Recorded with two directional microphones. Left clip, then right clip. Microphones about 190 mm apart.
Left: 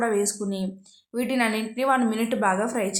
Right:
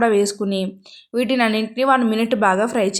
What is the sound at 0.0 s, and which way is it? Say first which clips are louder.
Speech: right 7 dB; 35° right (ahead or behind).